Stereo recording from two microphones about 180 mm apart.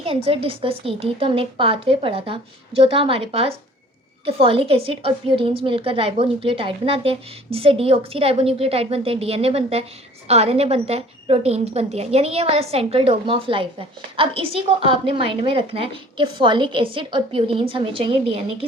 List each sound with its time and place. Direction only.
0.0 s a woman's voice: 30° right (ahead or behind)